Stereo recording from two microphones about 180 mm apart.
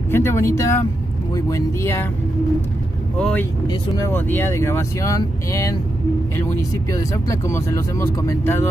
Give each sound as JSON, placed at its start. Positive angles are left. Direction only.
{"t": 0.1, "sound": "speech", "side_deg": 15}
{"t": 3.2, "sound": "speech", "side_deg": 5}
{"t": 7.4, "sound": "speech", "side_deg": 15}